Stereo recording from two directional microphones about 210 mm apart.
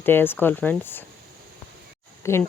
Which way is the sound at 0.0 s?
10° left (ahead or behind).